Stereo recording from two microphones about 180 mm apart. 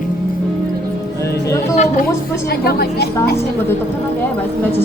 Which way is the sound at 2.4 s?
65° left (ahead or behind).